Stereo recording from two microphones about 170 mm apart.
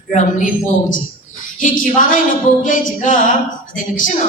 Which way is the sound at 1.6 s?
50° left (ahead or behind).